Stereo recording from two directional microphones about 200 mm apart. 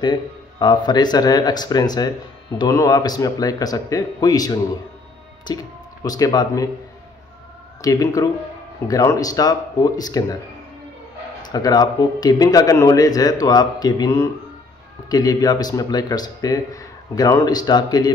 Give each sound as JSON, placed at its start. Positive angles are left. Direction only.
{"t": 0.0, "sound": "speech", "side_deg": 20}
{"t": 7.8, "sound": "speech", "side_deg": 15}
{"t": 11.4, "sound": "speech", "side_deg": 20}